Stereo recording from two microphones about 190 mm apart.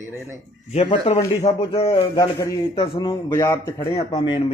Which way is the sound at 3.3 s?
15° left (ahead or behind).